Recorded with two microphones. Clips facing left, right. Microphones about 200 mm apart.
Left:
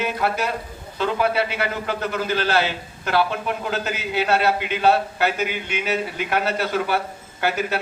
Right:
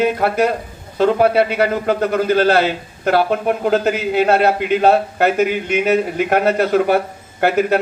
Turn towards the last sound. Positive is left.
turn(degrees=-55)  # may be behind; listen again after turning